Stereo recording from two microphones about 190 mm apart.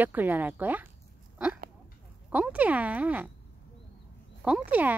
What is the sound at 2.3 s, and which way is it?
Speech, 10° right (ahead or behind).